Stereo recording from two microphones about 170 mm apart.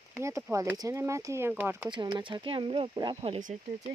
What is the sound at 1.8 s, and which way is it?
Speech, 25° right (ahead or behind).